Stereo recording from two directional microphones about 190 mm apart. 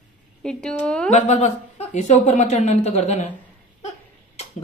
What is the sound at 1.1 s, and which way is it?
A woman's voice, 35° left (ahead or behind).